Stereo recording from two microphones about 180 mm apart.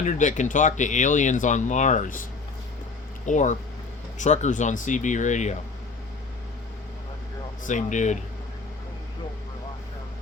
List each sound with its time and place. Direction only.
0.0 s speech: 40° left (ahead or behind)
3.2 s speech: 40° left (ahead or behind)
7.6 s speech: 45° left (ahead or behind)